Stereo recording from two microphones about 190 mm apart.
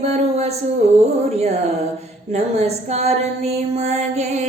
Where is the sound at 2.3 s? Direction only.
35° right (ahead or behind).